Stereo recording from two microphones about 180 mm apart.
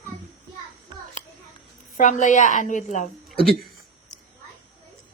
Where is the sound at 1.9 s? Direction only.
45° left (ahead or behind).